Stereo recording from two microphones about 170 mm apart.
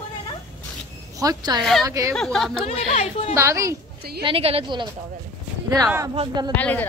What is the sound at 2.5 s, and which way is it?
Speech, 35° left (ahead or behind).